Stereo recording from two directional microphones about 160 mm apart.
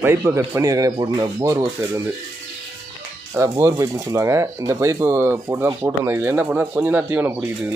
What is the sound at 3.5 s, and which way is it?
Speech, 20° right (ahead or behind).